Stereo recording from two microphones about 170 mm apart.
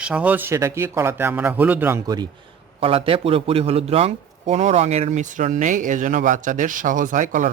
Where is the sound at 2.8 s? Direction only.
35° right (ahead or behind).